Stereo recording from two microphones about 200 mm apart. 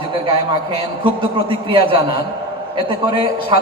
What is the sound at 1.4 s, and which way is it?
Speech, 25° right (ahead or behind).